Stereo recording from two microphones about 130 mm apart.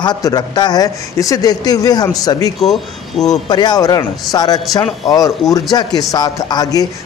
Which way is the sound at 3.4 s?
35° left (ahead or behind).